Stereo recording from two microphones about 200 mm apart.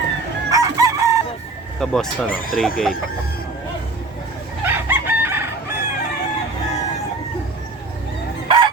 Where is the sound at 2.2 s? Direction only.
45° left (ahead or behind).